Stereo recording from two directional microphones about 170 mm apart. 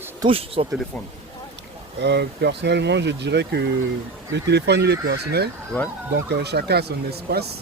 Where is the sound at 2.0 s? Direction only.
85° right.